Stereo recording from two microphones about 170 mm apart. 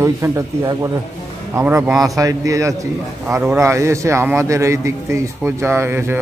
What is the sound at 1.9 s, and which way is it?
Speech, centre (ahead or behind).